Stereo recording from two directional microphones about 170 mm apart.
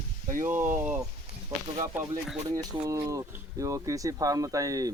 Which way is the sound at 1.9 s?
10° right (ahead or behind).